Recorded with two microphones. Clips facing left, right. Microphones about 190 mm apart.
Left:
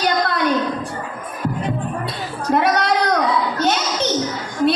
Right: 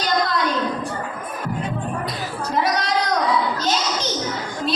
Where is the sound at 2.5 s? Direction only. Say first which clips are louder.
Left 5 dB; 60° left (ahead or behind).